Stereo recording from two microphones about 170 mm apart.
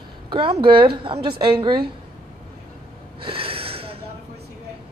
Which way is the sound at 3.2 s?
30° right (ahead or behind).